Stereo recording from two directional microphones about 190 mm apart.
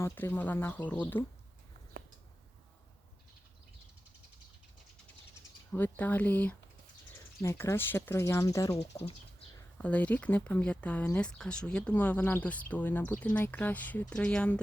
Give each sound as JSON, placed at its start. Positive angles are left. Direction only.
{"t": 0.0, "sound": "speech", "side_deg": 10}
{"t": 5.7, "sound": "speech", "side_deg": 10}